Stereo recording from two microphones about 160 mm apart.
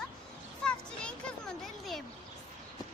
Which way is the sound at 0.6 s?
5° left (ahead or behind).